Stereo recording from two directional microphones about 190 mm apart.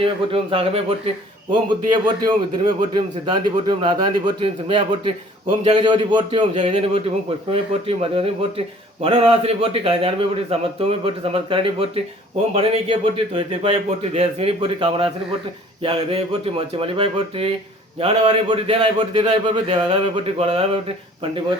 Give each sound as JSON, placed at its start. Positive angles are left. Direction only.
{"t": 0.0, "sound": "a man's voice", "side_deg": -30}